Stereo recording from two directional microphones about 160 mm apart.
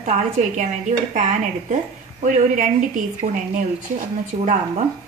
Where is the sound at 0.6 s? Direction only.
50° right (ahead or behind).